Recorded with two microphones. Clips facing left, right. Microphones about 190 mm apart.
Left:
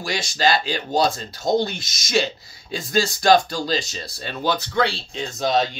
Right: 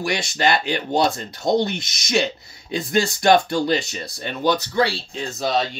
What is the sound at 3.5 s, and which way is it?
Speech, 60° right (ahead or behind).